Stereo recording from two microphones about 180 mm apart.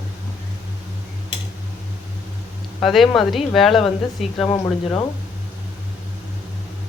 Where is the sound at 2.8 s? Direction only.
Centre (ahead or behind).